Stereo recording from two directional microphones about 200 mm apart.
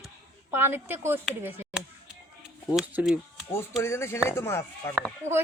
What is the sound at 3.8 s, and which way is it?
Speech, 15° left (ahead or behind).